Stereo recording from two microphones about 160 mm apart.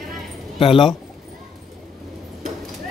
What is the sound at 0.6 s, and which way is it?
Speech, 35° left (ahead or behind).